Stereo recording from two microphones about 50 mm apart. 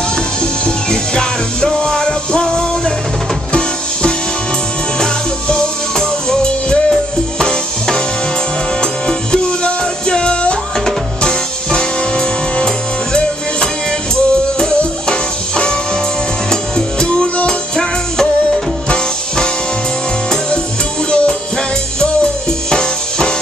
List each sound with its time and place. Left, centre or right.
0.4 s music: centre
5.0 s music: centre
9.0 s music: centre
14.8 s music: centre
21.1 s music: centre
22.7 s music: centre